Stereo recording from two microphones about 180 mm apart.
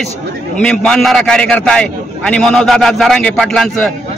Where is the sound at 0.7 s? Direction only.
5° left (ahead or behind).